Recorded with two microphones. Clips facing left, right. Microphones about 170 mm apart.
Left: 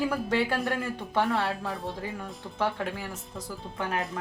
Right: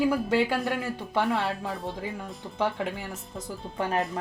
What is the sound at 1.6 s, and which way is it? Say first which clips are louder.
Speech: right 1 dB; centre (ahead or behind).